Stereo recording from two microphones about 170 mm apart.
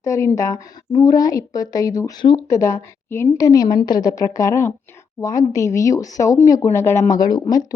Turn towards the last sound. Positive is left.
turn(degrees=20)  # may be behind; listen again after turning